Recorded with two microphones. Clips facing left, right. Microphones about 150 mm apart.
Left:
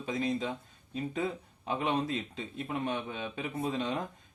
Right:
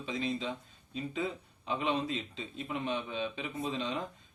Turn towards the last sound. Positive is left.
turn(degrees=50)  # may be behind; listen again after turning